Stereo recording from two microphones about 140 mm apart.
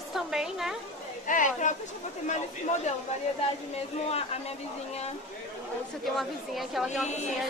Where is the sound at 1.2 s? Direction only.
65° left (ahead or behind).